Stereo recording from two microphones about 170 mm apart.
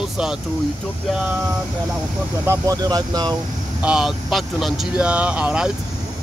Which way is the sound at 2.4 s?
20° right (ahead or behind).